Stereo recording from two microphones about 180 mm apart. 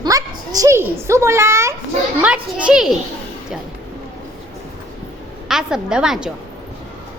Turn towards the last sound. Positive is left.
turn(degrees=-5)  # may be behind; listen again after turning